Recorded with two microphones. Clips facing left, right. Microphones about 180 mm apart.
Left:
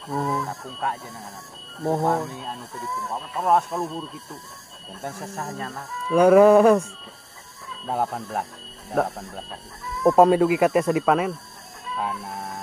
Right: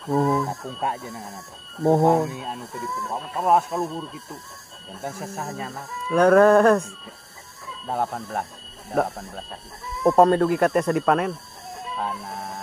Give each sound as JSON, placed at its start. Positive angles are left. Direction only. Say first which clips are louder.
{"t": 0.1, "sound": "speech", "louder": "right 5 dB", "side_deg": -15}
{"t": 5.0, "sound": "speech", "louder": "right 1 dB", "side_deg": 0}
{"t": 6.1, "sound": "livestock", "louder": "left 1 dB", "side_deg": 10}
{"t": 7.9, "sound": "speech", "louder": "left 1 dB", "side_deg": 5}